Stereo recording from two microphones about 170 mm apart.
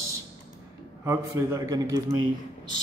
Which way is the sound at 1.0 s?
15° right (ahead or behind).